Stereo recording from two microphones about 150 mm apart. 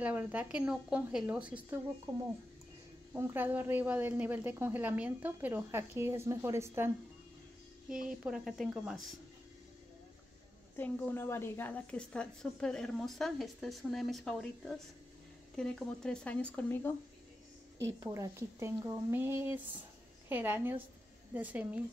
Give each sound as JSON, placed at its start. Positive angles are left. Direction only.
{"t": 0.0, "sound": "a woman's voice", "side_deg": -10}
{"t": 2.1, "sound": "a woman's voice", "side_deg": -25}
{"t": 8.1, "sound": "a woman's voice", "side_deg": -5}
{"t": 10.8, "sound": "a woman's voice", "side_deg": 15}
{"t": 17.8, "sound": "a woman's voice", "side_deg": -20}